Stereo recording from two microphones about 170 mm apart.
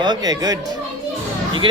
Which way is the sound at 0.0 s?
25° right (ahead or behind).